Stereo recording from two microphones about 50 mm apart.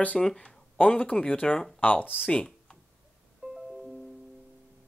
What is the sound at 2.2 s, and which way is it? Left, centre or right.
Speech, centre.